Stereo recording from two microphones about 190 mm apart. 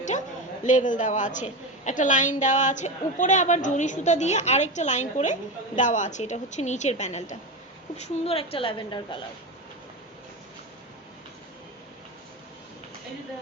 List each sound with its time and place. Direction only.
0.6 s a woman's voice: 40° left (ahead or behind)